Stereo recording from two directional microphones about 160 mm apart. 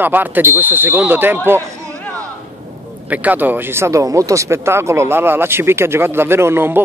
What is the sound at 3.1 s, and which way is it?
Speech, 10° right (ahead or behind).